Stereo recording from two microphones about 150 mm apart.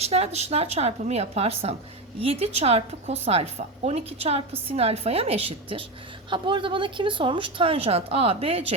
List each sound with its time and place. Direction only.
0.0 s a woman's voice: 45° right (ahead or behind)